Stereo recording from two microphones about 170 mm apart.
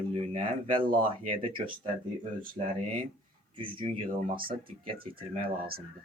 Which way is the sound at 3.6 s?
30° right (ahead or behind).